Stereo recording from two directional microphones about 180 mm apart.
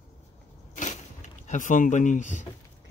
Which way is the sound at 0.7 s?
45° left (ahead or behind).